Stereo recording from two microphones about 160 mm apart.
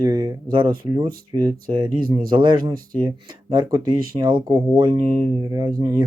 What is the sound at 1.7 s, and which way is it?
Speech, 30° right (ahead or behind).